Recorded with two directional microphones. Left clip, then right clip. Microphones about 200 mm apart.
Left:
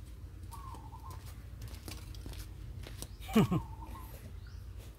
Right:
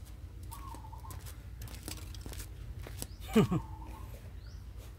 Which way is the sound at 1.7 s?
55° right (ahead or behind).